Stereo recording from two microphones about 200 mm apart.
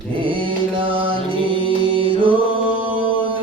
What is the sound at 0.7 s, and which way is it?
Music, 25° right (ahead or behind).